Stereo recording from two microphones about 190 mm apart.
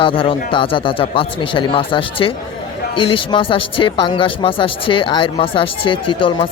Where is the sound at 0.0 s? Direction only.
30° left (ahead or behind).